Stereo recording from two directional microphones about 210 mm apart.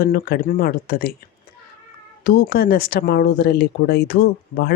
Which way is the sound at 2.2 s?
45° left (ahead or behind).